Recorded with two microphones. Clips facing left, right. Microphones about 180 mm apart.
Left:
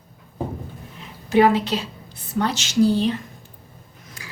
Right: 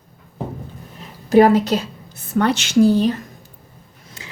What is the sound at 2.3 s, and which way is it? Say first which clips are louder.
Speech: right 6 dB; 60° right (ahead or behind).